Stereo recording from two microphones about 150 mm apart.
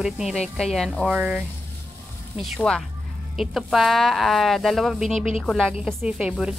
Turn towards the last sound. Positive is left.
turn(degrees=-5)  # may be behind; listen again after turning